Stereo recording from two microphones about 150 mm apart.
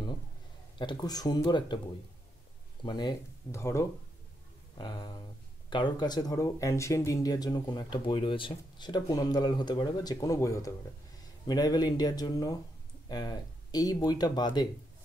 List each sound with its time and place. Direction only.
0.7 s speech: 30° left (ahead or behind)
2.8 s speech: 30° left (ahead or behind)
4.7 s speech: 30° left (ahead or behind)